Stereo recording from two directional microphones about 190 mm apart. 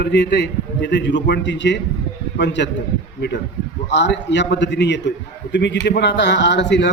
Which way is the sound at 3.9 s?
70° left (ahead or behind).